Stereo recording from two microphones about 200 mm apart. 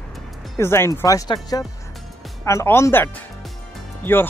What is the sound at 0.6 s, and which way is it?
Speech, 10° left (ahead or behind).